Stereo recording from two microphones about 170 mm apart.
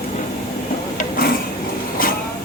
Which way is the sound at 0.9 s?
60° left (ahead or behind).